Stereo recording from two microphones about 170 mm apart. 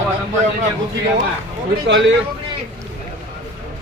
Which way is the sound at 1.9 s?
90° right.